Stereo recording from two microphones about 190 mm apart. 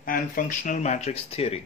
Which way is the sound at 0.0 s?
45° left (ahead or behind).